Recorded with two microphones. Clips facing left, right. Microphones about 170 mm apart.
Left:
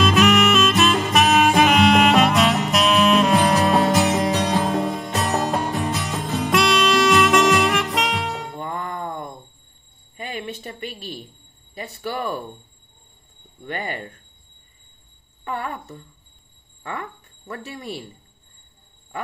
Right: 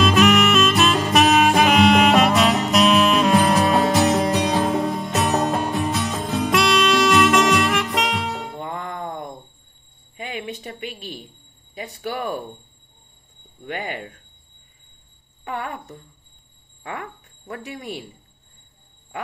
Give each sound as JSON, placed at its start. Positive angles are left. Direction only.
{"t": 0.0, "sound": "music", "side_deg": 0}
{"t": 8.5, "sound": "music", "side_deg": -20}
{"t": 10.1, "sound": "a sound", "side_deg": -15}
{"t": 11.7, "sound": "speech", "side_deg": -15}
{"t": 13.7, "sound": "speech", "side_deg": -15}
{"t": 15.4, "sound": "speech", "side_deg": -15}
{"t": 17.5, "sound": "speech", "side_deg": -15}